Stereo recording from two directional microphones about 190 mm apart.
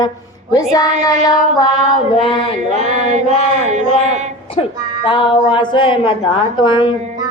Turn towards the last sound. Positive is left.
turn(degrees=25)  # may be behind; listen again after turning